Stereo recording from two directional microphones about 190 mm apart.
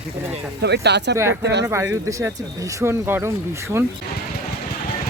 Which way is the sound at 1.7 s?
15° right (ahead or behind).